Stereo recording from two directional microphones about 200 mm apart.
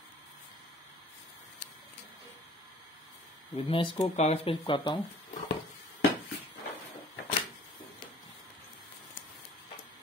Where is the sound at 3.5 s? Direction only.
25° left (ahead or behind).